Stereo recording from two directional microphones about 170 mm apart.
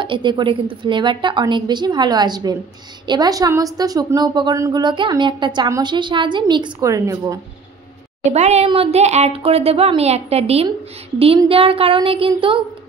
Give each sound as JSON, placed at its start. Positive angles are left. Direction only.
{"t": 0.0, "sound": "a woman's voice", "side_deg": -30}
{"t": 8.2, "sound": "a woman's voice", "side_deg": -40}